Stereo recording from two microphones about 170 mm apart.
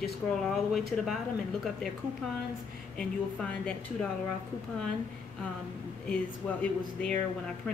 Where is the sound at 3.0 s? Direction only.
5° left (ahead or behind).